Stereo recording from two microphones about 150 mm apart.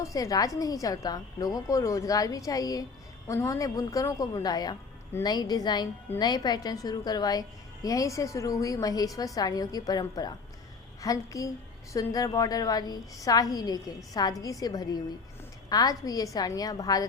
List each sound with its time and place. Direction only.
0.0 s a woman's voice: 20° left (ahead or behind)